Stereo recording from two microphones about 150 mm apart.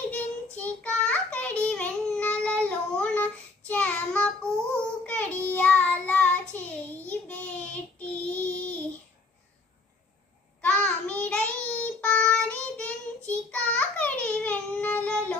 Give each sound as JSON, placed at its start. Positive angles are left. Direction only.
{"t": 0.1, "sound": "child singing", "side_deg": 10}
{"t": 10.6, "sound": "child singing", "side_deg": 10}